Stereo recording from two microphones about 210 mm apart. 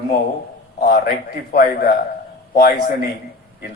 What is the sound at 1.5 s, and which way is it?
Speech, 45° left (ahead or behind).